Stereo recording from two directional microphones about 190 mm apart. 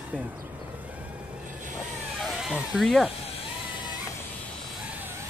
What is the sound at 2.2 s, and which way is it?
Speech, centre (ahead or behind).